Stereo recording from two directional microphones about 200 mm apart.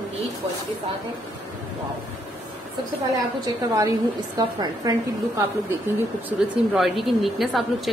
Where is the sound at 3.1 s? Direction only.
20° right (ahead or behind).